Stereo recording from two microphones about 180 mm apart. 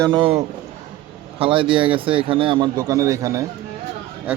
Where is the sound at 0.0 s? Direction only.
25° right (ahead or behind).